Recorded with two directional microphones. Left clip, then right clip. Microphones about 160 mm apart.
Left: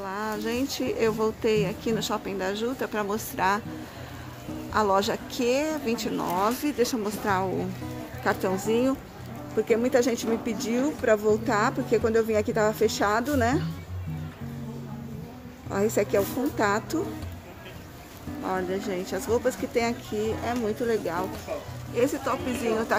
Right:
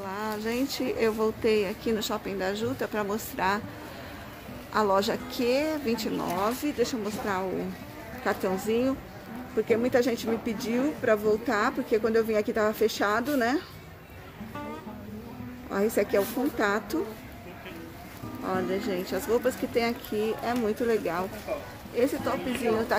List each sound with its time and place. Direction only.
0.0 s speech: 5° left (ahead or behind)
4.7 s a woman's voice: 5° left (ahead or behind)
15.7 s speech: 5° left (ahead or behind)
18.4 s speech: 5° left (ahead or behind)